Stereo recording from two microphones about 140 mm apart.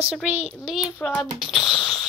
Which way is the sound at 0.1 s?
5° right (ahead or behind).